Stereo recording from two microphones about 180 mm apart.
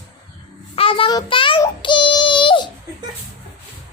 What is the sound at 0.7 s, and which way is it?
Child singing, 30° left (ahead or behind).